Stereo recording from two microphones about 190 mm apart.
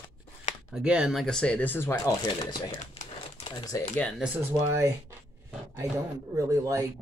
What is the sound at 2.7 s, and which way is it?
Typewriter, 35° left (ahead or behind).